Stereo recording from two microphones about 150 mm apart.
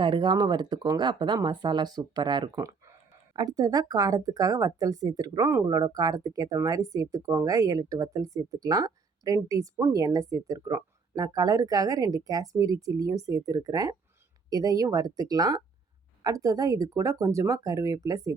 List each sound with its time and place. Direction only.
0.0 s speech: 30° right (ahead or behind)